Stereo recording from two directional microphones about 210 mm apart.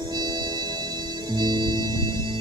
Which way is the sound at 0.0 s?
20° right (ahead or behind).